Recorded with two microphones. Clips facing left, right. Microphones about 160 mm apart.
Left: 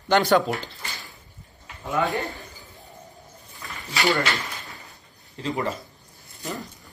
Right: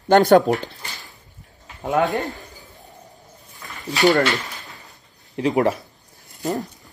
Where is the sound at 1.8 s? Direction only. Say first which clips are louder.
Right 5 dB; 45° right (ahead or behind).